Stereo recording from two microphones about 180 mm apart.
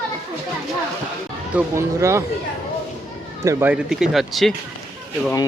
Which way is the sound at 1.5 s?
15° right (ahead or behind).